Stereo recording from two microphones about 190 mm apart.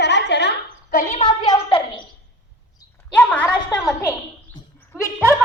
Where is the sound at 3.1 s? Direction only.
10° left (ahead or behind).